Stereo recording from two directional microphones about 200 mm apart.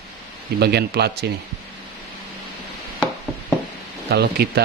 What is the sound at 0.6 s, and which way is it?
Speech, 55° right (ahead or behind).